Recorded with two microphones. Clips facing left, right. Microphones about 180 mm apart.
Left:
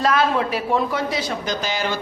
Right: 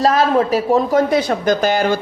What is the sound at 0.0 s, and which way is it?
A woman's voice, 40° right (ahead or behind).